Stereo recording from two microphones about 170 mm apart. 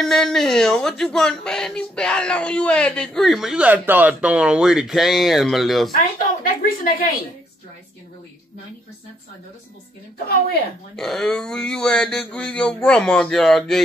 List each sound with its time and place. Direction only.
0.0 s speech: centre (ahead or behind)
6.1 s a sound: 55° left (ahead or behind)
10.1 s a woman's voice: 65° left (ahead or behind)
11.0 s speech: centre (ahead or behind)